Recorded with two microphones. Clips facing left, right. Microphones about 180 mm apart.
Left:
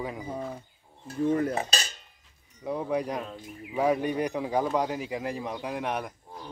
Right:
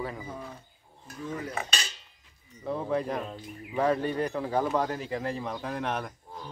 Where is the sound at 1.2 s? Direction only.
55° left (ahead or behind).